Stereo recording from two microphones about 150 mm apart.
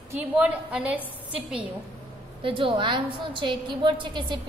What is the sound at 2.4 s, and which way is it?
A woman's voice, 35° right (ahead or behind).